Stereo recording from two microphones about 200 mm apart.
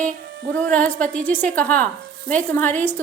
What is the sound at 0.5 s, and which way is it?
A woman's voice, 5° left (ahead or behind).